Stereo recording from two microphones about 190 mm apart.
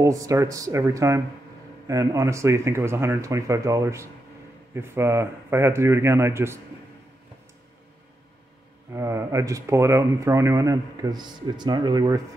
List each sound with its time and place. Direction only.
0.0 s speech: 15° right (ahead or behind)
8.9 s speech: 15° right (ahead or behind)